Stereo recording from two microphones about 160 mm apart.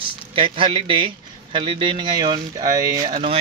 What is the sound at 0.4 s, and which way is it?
Speech, 35° right (ahead or behind).